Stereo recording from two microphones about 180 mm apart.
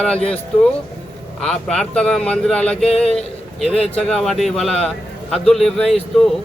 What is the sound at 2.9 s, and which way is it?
Speech, 35° left (ahead or behind).